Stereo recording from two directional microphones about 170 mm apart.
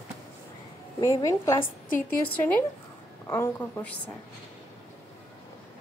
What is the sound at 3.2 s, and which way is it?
Speech, 10° left (ahead or behind).